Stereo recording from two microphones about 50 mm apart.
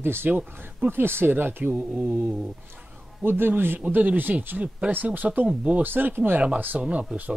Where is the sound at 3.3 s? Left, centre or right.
Right.